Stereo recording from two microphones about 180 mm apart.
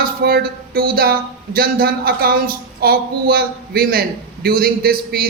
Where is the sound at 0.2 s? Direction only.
60° right (ahead or behind).